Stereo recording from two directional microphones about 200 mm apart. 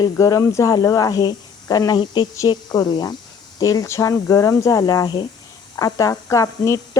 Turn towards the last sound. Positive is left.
turn(degrees=15)  # may be behind; listen again after turning